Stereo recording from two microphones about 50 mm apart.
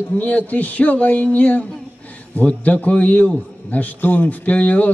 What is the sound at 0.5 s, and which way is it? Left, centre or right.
A man's voice, left.